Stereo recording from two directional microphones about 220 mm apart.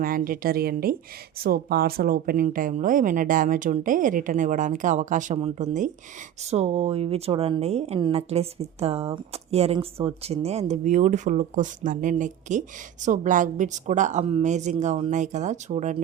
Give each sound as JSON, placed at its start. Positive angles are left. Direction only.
{"t": 0.0, "sound": "speech", "side_deg": -40}